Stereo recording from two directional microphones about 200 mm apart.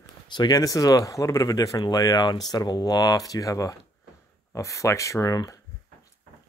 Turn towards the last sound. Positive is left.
turn(degrees=15)  # may be behind; listen again after turning